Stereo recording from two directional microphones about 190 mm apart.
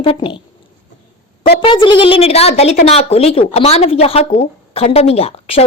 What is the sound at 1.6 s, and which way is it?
A woman's voice, 25° left (ahead or behind).